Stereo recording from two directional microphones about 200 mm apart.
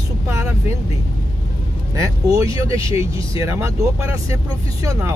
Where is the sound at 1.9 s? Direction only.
15° right (ahead or behind).